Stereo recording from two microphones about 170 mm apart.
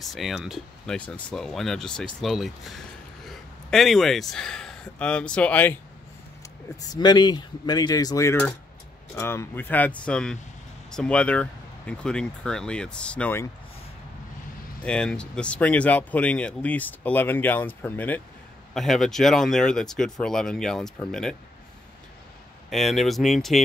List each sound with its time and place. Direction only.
0.0 s speech: centre (ahead or behind)
6.8 s a sound: 25° left (ahead or behind)
9.1 s speech: 15° left (ahead or behind)
14.8 s speech: 5° left (ahead or behind)
22.7 s speech: centre (ahead or behind)